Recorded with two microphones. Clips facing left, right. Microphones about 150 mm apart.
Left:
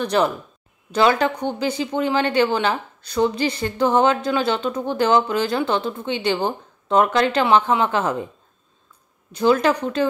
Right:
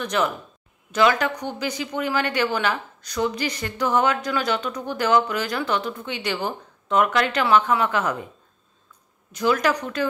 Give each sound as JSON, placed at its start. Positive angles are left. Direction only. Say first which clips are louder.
{"t": 0.0, "sound": "a man's voice", "louder": "left 4 dB", "side_deg": 35}
{"t": 9.3, "sound": "a woman's voice", "louder": "left 4 dB", "side_deg": 30}